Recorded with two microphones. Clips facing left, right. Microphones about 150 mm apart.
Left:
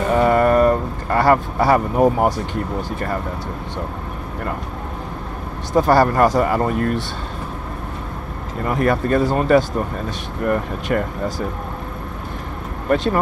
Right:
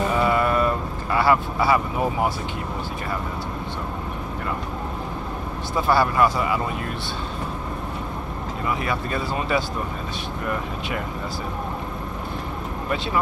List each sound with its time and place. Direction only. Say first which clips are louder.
0.1 s vehicle: left 10 dB; 45° left (ahead or behind)
5.8 s speech: left 5 dB; 40° left (ahead or behind)
8.6 s speech: left 8 dB; 50° left (ahead or behind)
12.9 s speech: left 7 dB; 45° left (ahead or behind)